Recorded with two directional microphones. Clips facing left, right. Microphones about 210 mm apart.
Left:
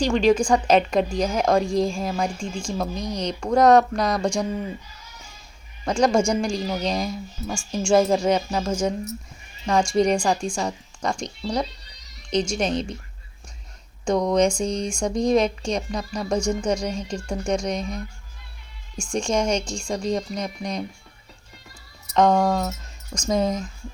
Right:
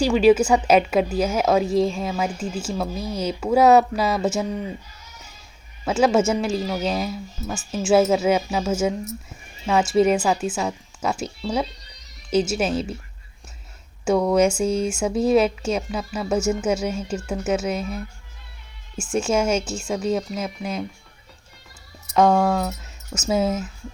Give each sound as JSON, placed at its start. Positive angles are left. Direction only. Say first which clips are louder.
{"t": 0.0, "sound": "a woman's voice", "louder": "right 3 dB", "side_deg": -5}
{"t": 5.8, "sound": "a woman's voice", "louder": "right 1 dB", "side_deg": -5}
{"t": 14.0, "sound": "a woman's voice", "louder": "right 2 dB", "side_deg": -5}
{"t": 22.1, "sound": "speech", "louder": "right 1 dB", "side_deg": -5}